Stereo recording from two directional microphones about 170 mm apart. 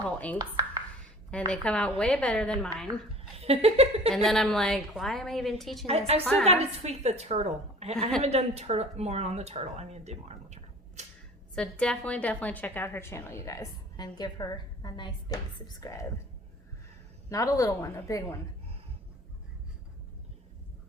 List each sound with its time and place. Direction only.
0.3 s speech: 20° right (ahead or behind)
1.3 s a woman's voice: 5° left (ahead or behind)
3.3 s speech: 35° right (ahead or behind)
4.1 s a woman's voice: centre (ahead or behind)
5.8 s speech: 35° right (ahead or behind)
11.5 s a woman's voice: 5° left (ahead or behind); by 16.0 s 20° left (ahead or behind)
17.2 s a woman's voice: 20° left (ahead or behind)